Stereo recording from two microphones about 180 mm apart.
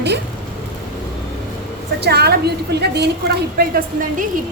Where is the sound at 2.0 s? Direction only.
65° right (ahead or behind).